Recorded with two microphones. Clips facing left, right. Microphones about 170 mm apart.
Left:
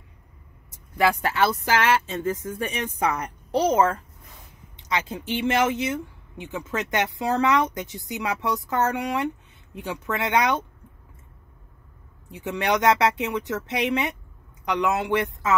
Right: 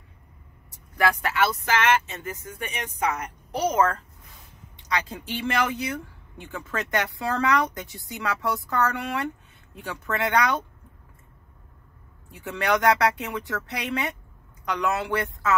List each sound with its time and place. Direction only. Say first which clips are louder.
0.9 s speech: left 2 dB; 30° left (ahead or behind)
12.3 s speech: left 1 dB; 20° left (ahead or behind)